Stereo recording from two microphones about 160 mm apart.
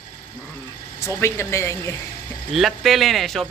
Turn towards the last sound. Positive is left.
turn(degrees=0)  # may be behind; listen again after turning